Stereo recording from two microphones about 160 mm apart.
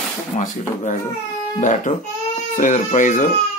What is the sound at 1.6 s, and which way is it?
Speech, 50° left (ahead or behind).